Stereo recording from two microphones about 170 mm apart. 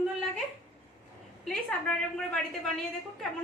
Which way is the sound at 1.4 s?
5° left (ahead or behind).